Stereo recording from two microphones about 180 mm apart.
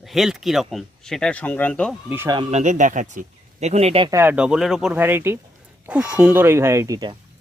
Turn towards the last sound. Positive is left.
turn(degrees=-20)  # may be behind; listen again after turning